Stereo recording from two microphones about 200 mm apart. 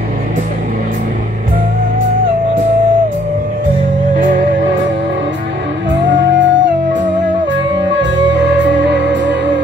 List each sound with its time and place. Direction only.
5.9 s music: 65° right (ahead or behind)
8.6 s music: 60° right (ahead or behind)